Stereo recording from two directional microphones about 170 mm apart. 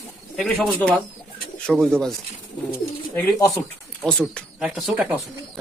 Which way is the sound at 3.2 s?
20° left (ahead or behind).